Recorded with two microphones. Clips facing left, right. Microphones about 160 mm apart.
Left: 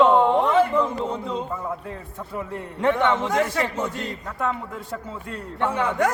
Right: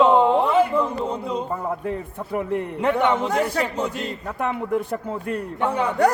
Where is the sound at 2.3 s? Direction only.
65° right (ahead or behind).